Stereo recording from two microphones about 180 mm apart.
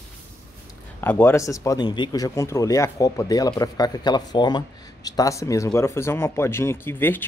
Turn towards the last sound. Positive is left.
turn(degrees=10)  # may be behind; listen again after turning